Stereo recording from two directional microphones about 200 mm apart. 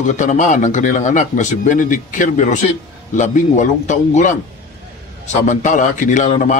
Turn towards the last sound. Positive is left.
turn(degrees=35)  # may be behind; listen again after turning